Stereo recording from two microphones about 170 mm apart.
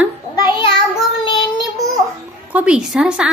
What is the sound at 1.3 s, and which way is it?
Child singing, 25° left (ahead or behind).